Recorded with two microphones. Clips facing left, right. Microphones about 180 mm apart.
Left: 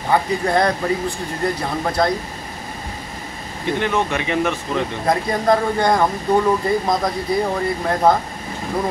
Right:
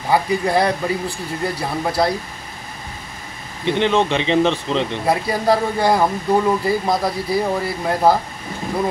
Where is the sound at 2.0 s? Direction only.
10° right (ahead or behind).